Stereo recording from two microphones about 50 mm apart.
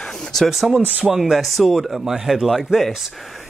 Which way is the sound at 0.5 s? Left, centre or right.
Centre.